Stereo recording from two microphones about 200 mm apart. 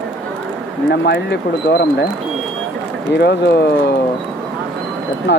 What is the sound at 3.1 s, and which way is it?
Speech, 60° left (ahead or behind).